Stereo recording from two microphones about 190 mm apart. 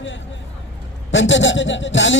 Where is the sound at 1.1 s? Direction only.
75° left (ahead or behind).